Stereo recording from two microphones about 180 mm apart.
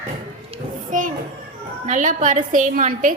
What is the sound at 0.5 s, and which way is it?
Children playing, 45° right (ahead or behind).